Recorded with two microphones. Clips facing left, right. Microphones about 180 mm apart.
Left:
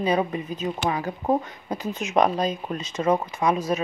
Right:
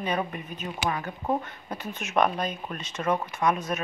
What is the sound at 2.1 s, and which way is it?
Speech, 35° left (ahead or behind).